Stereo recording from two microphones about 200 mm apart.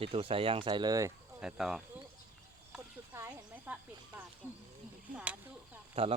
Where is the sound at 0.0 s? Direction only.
25° right (ahead or behind).